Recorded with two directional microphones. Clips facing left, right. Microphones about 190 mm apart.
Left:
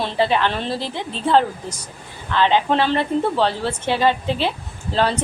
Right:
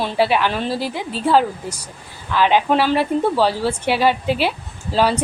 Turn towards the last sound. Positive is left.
turn(degrees=-5)  # may be behind; listen again after turning